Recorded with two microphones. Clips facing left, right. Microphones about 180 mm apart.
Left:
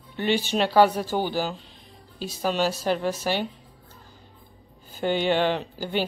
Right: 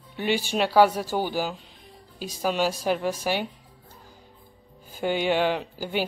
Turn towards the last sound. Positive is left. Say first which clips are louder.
# left 1 dB
turn(degrees=-10)  # may be behind; listen again after turning